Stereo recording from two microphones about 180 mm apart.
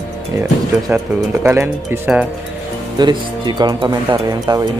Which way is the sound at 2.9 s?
25° right (ahead or behind).